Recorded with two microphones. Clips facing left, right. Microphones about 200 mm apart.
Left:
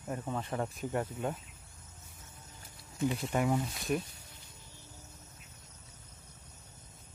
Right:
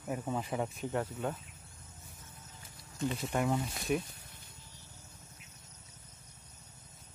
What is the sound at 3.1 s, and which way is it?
Speech, centre (ahead or behind).